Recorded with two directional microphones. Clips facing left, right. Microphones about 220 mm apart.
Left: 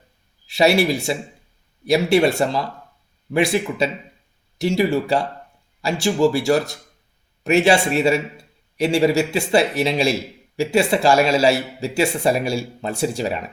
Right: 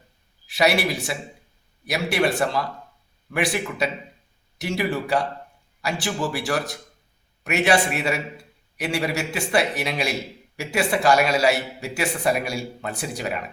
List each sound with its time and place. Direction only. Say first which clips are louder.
0.4 s speech: left 5 dB; 25° left (ahead or behind)